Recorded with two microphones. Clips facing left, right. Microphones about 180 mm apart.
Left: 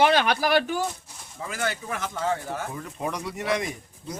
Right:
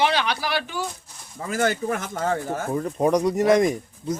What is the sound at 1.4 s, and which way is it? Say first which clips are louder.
Speech: right 7 dB; 45° right (ahead or behind).